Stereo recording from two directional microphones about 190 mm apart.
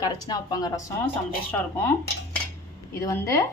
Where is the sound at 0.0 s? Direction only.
20° left (ahead or behind).